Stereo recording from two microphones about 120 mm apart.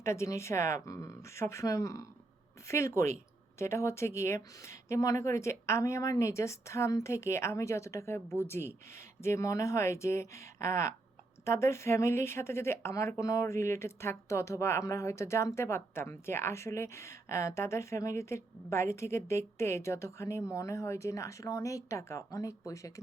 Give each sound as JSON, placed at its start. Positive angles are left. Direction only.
{"t": 0.0, "sound": "speech", "side_deg": 25}